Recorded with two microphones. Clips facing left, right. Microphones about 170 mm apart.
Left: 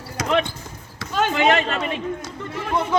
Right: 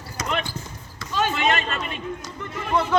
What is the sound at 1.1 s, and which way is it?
Speech, 75° left (ahead or behind).